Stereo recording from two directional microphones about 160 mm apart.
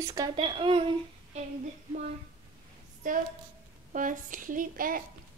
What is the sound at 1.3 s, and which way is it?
Speech, 45° right (ahead or behind).